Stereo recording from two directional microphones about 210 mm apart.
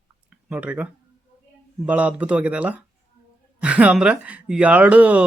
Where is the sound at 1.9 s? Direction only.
5° right (ahead or behind).